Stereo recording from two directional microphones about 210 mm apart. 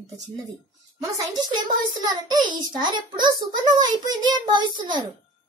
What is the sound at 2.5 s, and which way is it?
A child's voice, 20° right (ahead or behind).